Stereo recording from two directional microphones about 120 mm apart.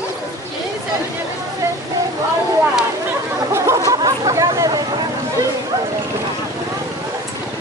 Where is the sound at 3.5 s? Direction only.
25° right (ahead or behind).